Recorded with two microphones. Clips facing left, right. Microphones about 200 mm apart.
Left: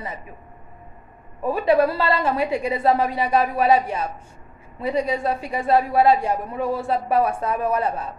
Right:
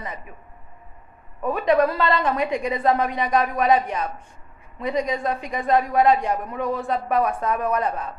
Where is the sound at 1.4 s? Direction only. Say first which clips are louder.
Left 1 dB; 30° left (ahead or behind).